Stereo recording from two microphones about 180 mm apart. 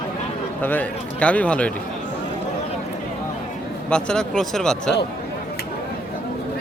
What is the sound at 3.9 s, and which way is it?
A man's voice, 5° left (ahead or behind).